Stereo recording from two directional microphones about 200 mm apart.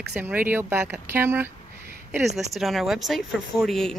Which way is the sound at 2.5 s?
Centre (ahead or behind).